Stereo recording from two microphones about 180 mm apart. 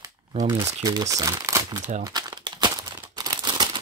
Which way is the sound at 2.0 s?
25° right (ahead or behind).